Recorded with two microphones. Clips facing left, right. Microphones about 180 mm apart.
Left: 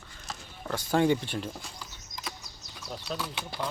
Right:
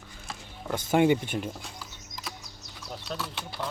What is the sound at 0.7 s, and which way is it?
Speech, 20° right (ahead or behind).